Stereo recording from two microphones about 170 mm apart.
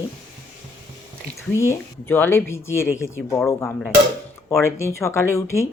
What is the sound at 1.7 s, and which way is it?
Speech, 10° left (ahead or behind).